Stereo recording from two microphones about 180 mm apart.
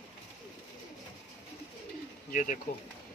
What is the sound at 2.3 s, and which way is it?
Speech, 45° left (ahead or behind).